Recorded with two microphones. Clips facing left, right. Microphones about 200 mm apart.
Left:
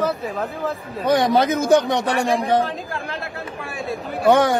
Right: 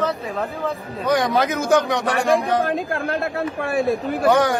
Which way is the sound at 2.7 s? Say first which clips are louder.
Right 6 dB; 55° right (ahead or behind).